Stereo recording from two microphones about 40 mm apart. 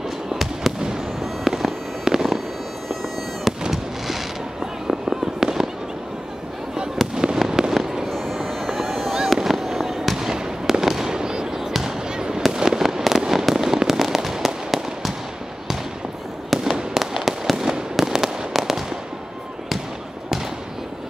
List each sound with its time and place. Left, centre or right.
0.3 s fireworks: centre
3.5 s fireworks: centre
4.8 s fireworks: centre
7.2 s fireworks: centre
8.1 s vehicle: centre
9.1 s fireworks: centre
16.6 s fireworks: centre